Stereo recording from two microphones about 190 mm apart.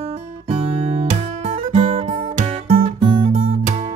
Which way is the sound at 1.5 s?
35° right (ahead or behind).